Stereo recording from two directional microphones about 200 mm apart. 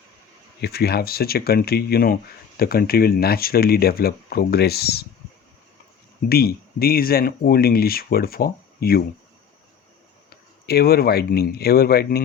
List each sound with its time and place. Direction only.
0.6 s speech: 50° left (ahead or behind)
6.2 s speech: 50° left (ahead or behind)
10.2 s speech: 50° left (ahead or behind)